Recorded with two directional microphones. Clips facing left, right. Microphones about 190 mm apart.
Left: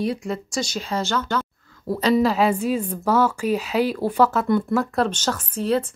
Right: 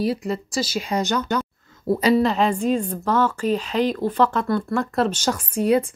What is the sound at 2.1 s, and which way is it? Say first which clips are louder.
A woman's voice: left 1 dB; 5° left (ahead or behind).